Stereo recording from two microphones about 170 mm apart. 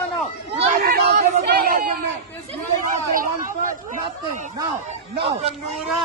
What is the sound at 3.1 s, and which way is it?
Speech, 50° right (ahead or behind).